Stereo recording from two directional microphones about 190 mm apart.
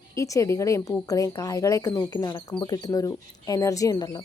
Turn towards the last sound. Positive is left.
turn(degrees=20)  # may be behind; listen again after turning